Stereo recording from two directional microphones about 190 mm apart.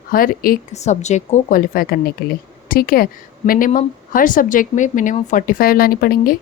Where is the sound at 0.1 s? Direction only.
50° left (ahead or behind).